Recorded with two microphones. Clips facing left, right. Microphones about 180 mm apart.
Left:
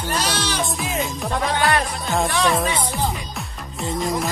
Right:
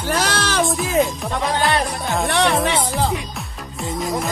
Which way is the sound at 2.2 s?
65° right (ahead or behind).